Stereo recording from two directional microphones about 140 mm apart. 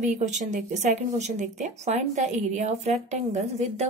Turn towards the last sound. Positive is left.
turn(degrees=-50)  # may be behind; listen again after turning